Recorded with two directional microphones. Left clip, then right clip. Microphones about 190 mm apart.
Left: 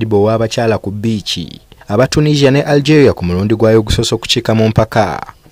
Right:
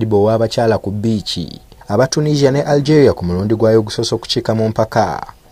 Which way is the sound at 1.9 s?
45° left (ahead or behind).